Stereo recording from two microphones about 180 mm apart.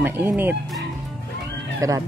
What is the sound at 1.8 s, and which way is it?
Speech, 20° right (ahead or behind).